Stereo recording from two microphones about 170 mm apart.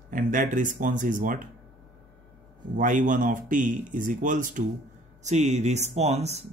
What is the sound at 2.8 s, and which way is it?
Speech, 50° right (ahead or behind).